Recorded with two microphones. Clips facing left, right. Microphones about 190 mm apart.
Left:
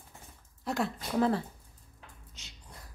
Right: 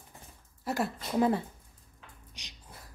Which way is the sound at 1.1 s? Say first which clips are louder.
Right 1 dB; 15° right (ahead or behind).